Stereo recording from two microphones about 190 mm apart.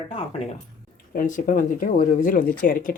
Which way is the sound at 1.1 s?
45° left (ahead or behind).